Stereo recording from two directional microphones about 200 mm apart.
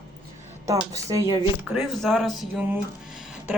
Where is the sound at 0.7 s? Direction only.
15° right (ahead or behind).